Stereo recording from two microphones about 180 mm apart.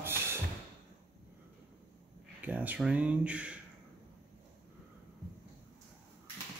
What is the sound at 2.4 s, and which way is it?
Speech, 10° right (ahead or behind).